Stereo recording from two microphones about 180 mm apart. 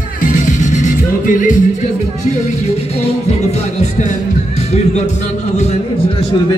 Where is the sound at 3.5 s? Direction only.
40° left (ahead or behind).